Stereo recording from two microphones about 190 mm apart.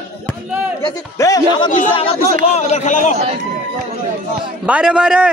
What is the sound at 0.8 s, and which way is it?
Speech, 20° left (ahead or behind).